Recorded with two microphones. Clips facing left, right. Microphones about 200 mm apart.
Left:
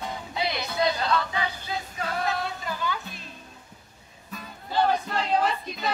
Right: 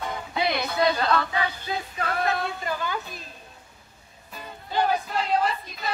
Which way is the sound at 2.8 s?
45° right (ahead or behind).